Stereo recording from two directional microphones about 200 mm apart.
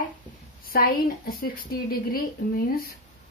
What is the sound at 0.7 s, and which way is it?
Speech, 45° left (ahead or behind).